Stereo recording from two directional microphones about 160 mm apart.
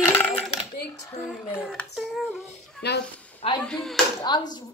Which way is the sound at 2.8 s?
90° left.